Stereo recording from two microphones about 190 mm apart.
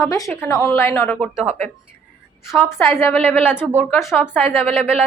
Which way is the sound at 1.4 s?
35° right (ahead or behind).